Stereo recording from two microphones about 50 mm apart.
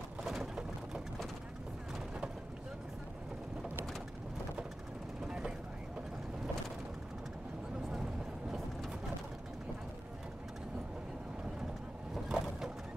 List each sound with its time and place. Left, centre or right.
5.2 s vehicle: centre
7.9 s vehicle: centre
12.3 s a sound: centre